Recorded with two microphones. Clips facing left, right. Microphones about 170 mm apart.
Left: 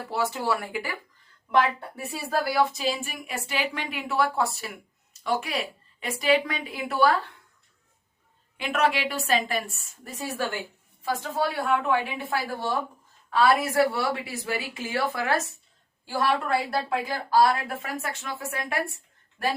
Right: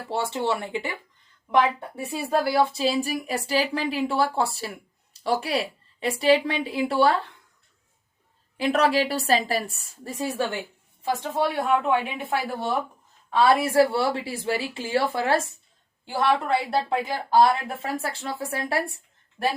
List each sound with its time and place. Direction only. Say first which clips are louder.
0.1 s a woman's voice: right 2 dB; 25° right (ahead or behind)
2.0 s speech: right 3 dB; 25° right (ahead or behind)
8.5 s a woman's voice: right 4 dB; 35° right (ahead or behind)